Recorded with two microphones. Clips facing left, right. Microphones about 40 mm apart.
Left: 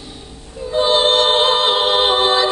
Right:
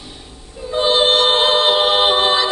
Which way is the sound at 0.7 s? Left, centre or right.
Right.